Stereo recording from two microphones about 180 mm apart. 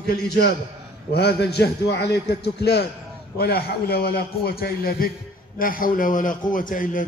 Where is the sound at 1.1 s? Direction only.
65° left (ahead or behind).